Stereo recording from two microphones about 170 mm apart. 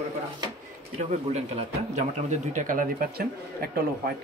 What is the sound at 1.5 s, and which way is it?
A man's voice, 45° right (ahead or behind).